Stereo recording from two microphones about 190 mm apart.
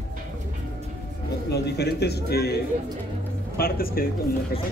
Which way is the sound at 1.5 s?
60° left (ahead or behind).